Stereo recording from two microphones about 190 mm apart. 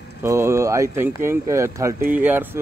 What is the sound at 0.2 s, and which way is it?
Speech, 15° right (ahead or behind).